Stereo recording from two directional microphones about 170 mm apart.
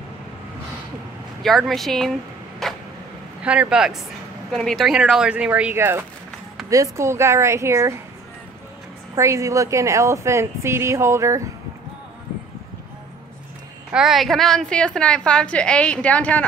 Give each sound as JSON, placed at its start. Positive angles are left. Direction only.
{"t": 1.4, "sound": "a woman's voice", "side_deg": 0}
{"t": 2.6, "sound": "a sound", "side_deg": 0}
{"t": 3.4, "sound": "a woman's voice", "side_deg": -5}
{"t": 9.1, "sound": "speech", "side_deg": -20}
{"t": 13.9, "sound": "a woman's voice", "side_deg": 0}